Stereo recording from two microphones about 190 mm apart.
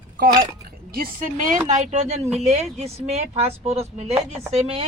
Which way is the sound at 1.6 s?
35° right (ahead or behind).